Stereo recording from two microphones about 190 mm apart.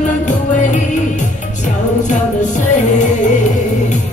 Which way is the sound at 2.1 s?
40° left (ahead or behind).